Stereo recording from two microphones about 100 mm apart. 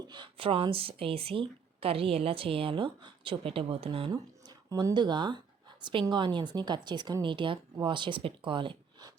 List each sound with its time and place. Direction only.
0.1 s speech: 55° right (ahead or behind)
4.1 s a woman's voice: 40° right (ahead or behind)